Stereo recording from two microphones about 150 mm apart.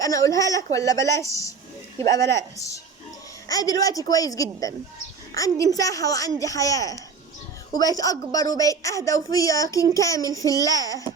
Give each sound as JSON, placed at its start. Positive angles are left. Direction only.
{"t": 0.0, "sound": "a woman's voice", "side_deg": 25}